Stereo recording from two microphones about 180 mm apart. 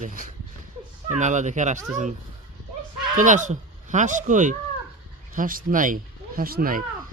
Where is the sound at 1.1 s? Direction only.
40° right (ahead or behind).